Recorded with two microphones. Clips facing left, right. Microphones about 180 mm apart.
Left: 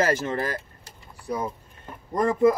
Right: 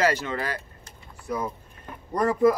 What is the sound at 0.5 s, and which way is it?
Vehicle, 30° left (ahead or behind).